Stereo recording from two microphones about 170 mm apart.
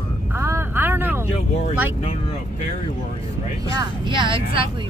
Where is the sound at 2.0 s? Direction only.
40° left (ahead or behind).